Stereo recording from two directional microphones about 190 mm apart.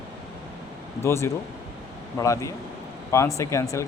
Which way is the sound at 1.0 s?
15° left (ahead or behind).